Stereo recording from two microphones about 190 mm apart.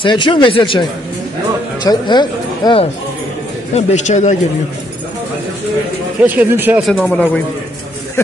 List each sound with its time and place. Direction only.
0.0 s a man's voice: 25° left (ahead or behind)
3.7 s a man's voice: 35° left (ahead or behind)
6.2 s a man's voice: 10° right (ahead or behind)
6.9 s a man's voice: 5° left (ahead or behind)